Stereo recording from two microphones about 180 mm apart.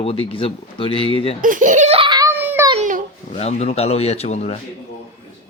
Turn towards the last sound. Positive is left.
turn(degrees=35)  # may be behind; listen again after turning